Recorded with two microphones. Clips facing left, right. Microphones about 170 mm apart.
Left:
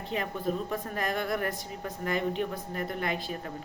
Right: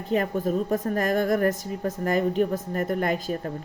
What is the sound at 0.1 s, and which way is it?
A woman's voice, 45° right (ahead or behind).